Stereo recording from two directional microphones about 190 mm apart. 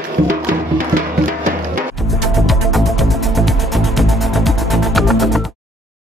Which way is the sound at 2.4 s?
Centre (ahead or behind).